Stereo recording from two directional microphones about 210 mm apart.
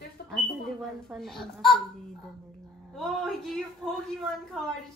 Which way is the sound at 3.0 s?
Centre (ahead or behind).